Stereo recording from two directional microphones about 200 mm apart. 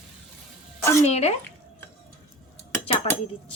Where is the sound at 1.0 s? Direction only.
35° left (ahead or behind).